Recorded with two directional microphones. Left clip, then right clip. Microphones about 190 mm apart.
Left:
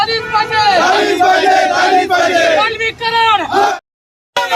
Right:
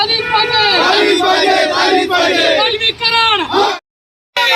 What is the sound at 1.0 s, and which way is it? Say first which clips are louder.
Battle cry: left 1 dB; centre (ahead or behind).